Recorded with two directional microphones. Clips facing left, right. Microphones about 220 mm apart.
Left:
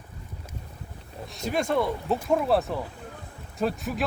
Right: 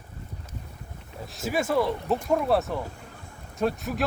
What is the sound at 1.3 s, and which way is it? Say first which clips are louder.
Speech: even; 5° right (ahead or behind).